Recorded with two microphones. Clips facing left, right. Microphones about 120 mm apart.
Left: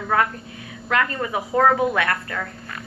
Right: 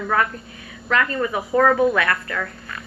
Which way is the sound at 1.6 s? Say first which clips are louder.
Right 2 dB; 35° left (ahead or behind).